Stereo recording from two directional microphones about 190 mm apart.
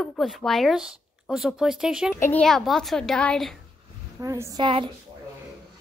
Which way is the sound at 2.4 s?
Centre (ahead or behind).